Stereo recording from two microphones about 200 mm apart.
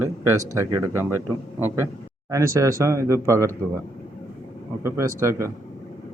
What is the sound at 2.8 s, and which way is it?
Speech, 15° right (ahead or behind).